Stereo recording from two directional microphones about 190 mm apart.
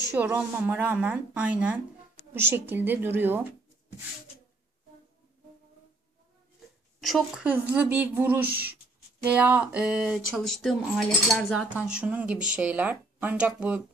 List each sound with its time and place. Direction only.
0.1 s speech: 10° right (ahead or behind)
7.0 s speech: centre (ahead or behind)
8.5 s speech: 55° right (ahead or behind)
9.2 s speech: 5° right (ahead or behind)